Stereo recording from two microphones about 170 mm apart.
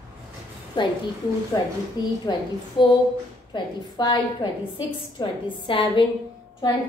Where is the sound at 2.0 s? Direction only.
25° left (ahead or behind).